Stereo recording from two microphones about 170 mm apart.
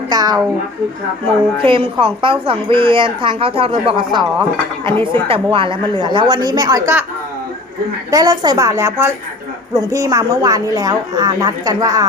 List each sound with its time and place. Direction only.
0.1 s a sound: 20° right (ahead or behind)
1.6 s a woman's voice: 30° right (ahead or behind)
8.1 s a woman's voice: 25° right (ahead or behind)